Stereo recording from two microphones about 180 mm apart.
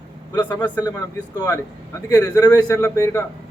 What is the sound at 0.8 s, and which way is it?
A man's voice, 20° left (ahead or behind).